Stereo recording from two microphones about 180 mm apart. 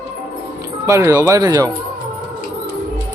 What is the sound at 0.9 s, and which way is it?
Speech, 20° right (ahead or behind).